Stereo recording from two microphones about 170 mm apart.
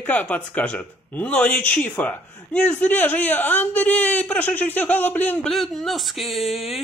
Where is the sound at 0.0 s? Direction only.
10° left (ahead or behind).